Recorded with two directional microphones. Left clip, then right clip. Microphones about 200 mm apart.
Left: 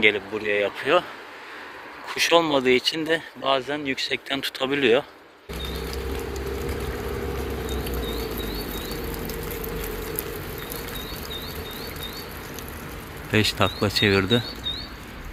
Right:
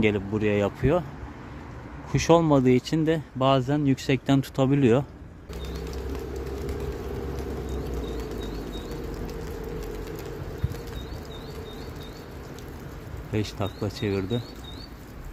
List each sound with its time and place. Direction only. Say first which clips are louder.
0.0 s speech: left 4 dB; 20° right (ahead or behind)
2.0 s speech: left 1 dB; 15° right (ahead or behind); by 4.2 s 30° right (ahead or behind)
4.4 s speech: even; 20° right (ahead or behind)
13.3 s speech: left 9 dB; centre (ahead or behind)